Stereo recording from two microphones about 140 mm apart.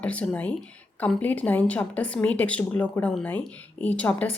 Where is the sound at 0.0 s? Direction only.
10° left (ahead or behind).